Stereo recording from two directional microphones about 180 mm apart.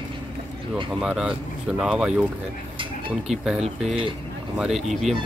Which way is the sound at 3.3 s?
Centre (ahead or behind).